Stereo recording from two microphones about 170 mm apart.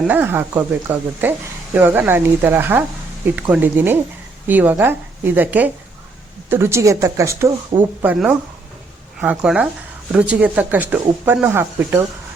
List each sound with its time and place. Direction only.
0.0 s speech: 10° right (ahead or behind)
8.0 s speech: 5° right (ahead or behind)